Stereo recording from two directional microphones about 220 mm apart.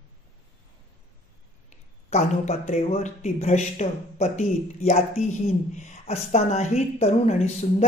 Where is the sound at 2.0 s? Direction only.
30° left (ahead or behind).